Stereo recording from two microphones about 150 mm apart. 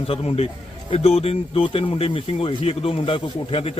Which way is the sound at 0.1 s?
40° left (ahead or behind).